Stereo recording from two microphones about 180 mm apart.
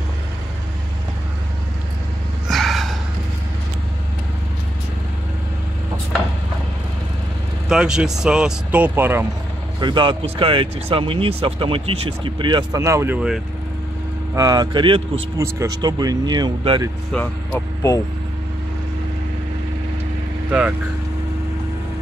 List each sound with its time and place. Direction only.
2.4 s a sound: centre (ahead or behind)
7.6 s speech: 5° right (ahead or behind)
9.8 s speech: 25° right (ahead or behind); by 13.4 s 5° right (ahead or behind)
14.3 s speech: 20° right (ahead or behind)
17.1 s speech: 10° left (ahead or behind)
20.4 s speech: 5° right (ahead or behind)